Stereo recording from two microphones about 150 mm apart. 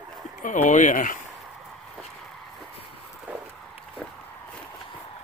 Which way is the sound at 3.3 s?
10° right (ahead or behind).